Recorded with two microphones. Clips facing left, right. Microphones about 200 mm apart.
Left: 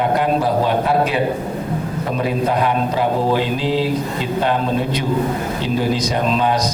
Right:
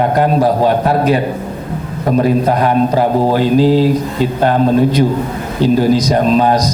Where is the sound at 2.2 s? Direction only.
40° right (ahead or behind).